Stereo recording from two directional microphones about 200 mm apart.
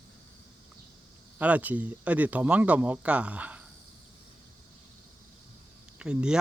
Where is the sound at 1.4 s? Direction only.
5° right (ahead or behind).